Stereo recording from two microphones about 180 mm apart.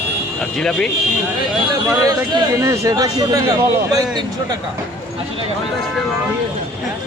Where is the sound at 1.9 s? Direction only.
20° right (ahead or behind).